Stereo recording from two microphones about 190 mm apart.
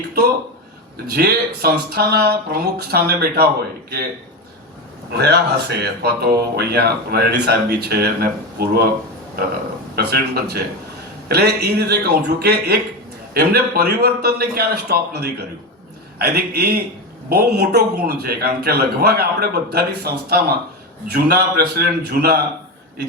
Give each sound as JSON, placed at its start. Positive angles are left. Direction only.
{"t": 1.1, "sound": "speech", "side_deg": -55}
{"t": 5.1, "sound": "speech", "side_deg": -60}
{"t": 9.9, "sound": "speech", "side_deg": -55}